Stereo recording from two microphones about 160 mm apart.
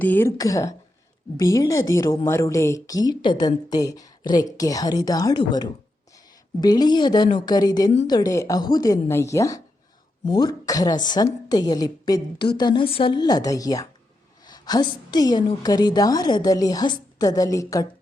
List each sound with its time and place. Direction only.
0.0 s speech: 10° left (ahead or behind)